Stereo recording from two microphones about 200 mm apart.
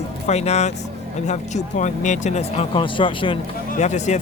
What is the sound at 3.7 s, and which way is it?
Speech, 35° left (ahead or behind).